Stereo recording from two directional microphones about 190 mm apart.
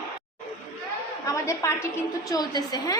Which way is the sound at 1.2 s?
15° left (ahead or behind).